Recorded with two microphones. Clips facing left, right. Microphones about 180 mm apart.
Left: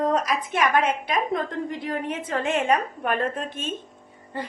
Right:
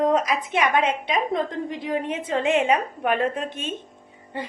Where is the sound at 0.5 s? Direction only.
20° right (ahead or behind).